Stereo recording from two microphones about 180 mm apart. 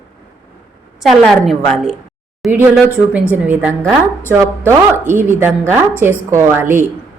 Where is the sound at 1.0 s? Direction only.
5° right (ahead or behind).